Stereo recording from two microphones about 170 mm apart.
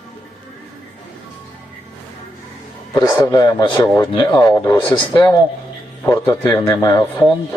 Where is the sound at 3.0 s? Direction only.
15° left (ahead or behind).